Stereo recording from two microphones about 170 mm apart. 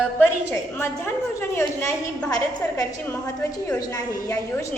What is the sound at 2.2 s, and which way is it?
Speech, 20° left (ahead or behind).